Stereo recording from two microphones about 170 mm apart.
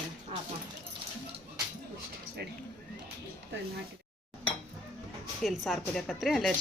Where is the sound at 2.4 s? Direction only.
70° right (ahead or behind).